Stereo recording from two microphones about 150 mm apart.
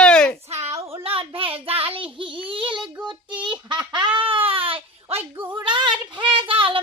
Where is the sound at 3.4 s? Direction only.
30° right (ahead or behind).